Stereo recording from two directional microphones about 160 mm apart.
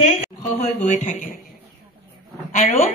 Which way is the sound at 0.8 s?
50° left (ahead or behind).